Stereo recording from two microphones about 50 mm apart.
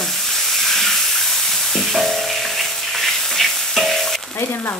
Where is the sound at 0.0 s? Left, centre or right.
Centre.